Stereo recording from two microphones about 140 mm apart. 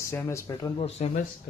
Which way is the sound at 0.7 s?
50° left (ahead or behind).